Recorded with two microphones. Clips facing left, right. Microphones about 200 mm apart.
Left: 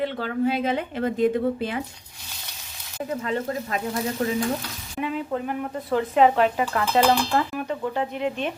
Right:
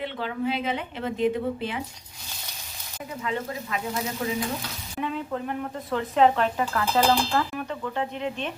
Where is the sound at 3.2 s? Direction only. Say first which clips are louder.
Left 1 dB; 40° left (ahead or behind).